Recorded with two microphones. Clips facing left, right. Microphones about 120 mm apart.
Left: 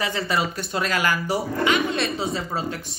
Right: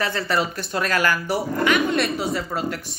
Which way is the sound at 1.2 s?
20° left (ahead or behind).